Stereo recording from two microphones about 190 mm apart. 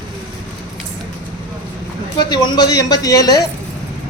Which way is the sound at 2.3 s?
20° left (ahead or behind).